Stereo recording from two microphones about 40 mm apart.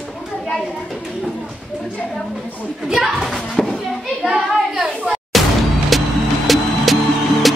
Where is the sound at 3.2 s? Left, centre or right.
Centre.